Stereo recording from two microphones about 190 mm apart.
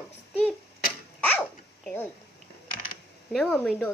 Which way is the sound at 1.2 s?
5° left (ahead or behind).